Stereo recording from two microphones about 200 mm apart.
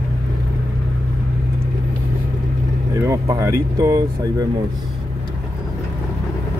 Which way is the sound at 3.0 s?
15° right (ahead or behind).